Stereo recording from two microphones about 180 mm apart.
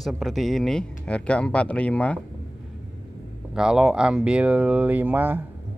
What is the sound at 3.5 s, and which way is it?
Speech, 5° right (ahead or behind).